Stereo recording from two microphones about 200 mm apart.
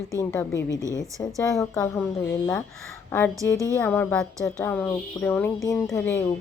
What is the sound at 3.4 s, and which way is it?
Speech, 15° right (ahead or behind).